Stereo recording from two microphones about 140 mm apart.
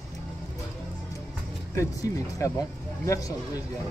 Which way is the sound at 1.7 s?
20° left (ahead or behind).